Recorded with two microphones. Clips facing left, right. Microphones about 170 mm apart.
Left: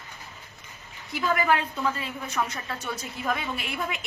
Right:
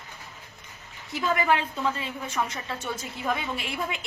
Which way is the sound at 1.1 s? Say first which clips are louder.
Even; 25° right (ahead or behind).